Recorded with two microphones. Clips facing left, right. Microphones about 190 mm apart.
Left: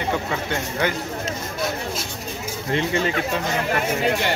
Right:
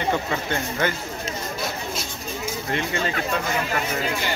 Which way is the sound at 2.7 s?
25° left (ahead or behind).